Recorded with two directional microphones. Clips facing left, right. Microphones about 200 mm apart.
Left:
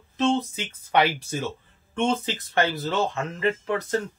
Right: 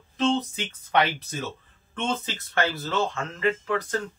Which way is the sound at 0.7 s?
10° left (ahead or behind).